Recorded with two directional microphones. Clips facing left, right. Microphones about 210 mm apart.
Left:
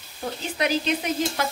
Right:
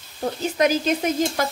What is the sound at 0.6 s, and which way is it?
Speech, 45° right (ahead or behind).